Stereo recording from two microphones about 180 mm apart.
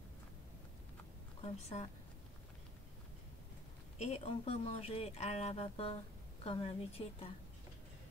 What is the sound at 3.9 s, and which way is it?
A woman's voice, 35° left (ahead or behind).